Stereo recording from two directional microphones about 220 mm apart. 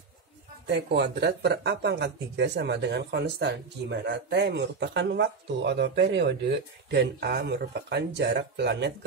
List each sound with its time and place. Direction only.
0.7 s speech: 50° right (ahead or behind)